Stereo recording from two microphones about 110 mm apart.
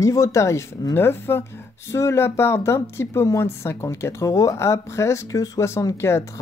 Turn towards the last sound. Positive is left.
turn(degrees=25)  # may be behind; listen again after turning